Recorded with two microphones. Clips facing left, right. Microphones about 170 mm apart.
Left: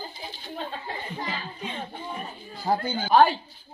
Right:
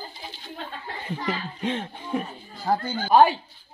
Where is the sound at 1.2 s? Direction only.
85° right.